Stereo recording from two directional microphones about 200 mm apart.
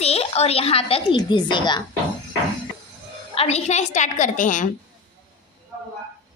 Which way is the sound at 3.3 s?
30° left (ahead or behind).